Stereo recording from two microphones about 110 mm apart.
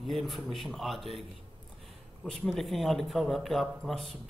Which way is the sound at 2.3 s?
Centre (ahead or behind).